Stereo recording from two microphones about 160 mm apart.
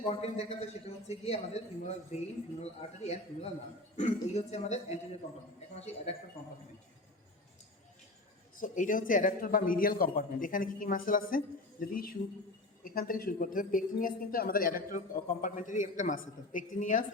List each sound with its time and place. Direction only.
0.2 s a man's voice: 40° left (ahead or behind)
8.6 s speech: 55° left (ahead or behind)